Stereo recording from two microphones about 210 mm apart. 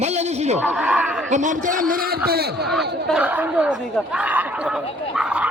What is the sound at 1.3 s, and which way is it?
Speech, 35° right (ahead or behind).